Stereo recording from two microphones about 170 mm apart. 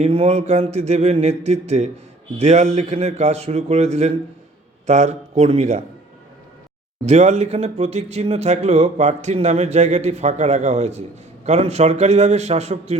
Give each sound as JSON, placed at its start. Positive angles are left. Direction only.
{"t": 0.0, "sound": "speech", "side_deg": -35}
{"t": 7.0, "sound": "speech", "side_deg": -40}